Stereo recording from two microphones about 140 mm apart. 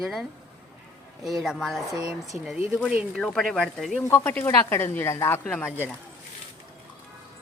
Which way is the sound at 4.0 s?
20° left (ahead or behind).